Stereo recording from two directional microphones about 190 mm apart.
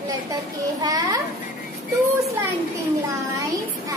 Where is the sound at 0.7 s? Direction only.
20° right (ahead or behind).